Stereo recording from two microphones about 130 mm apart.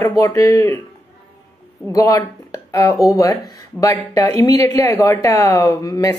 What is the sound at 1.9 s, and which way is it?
Speech, 25° left (ahead or behind).